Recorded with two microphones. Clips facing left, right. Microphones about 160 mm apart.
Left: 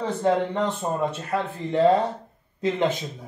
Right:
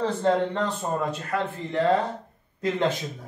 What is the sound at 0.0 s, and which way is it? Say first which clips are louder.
Speech: even; 10° left (ahead or behind).